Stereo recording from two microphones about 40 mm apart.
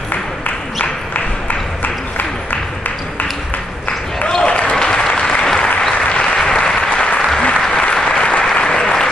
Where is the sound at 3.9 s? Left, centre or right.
Left.